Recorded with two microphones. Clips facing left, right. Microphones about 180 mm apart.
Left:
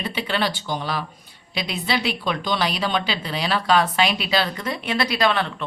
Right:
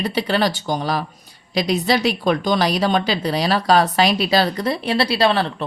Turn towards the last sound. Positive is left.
turn(degrees=-30)  # may be behind; listen again after turning